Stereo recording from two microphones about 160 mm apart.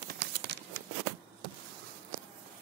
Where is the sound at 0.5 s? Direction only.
90° right.